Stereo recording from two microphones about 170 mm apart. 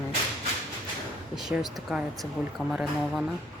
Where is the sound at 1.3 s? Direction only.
5° right (ahead or behind).